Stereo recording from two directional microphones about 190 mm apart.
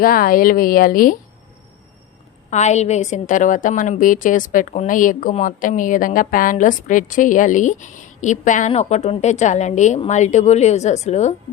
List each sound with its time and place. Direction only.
0.0 s speech: 50° left (ahead or behind)
2.5 s a woman's voice: 35° left (ahead or behind)